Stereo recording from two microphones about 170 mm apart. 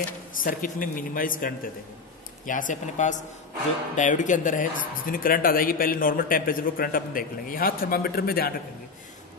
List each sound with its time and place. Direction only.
0.4 s a man's voice: 55° left (ahead or behind)